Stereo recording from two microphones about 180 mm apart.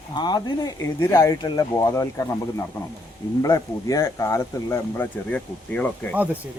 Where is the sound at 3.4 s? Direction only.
20° left (ahead or behind).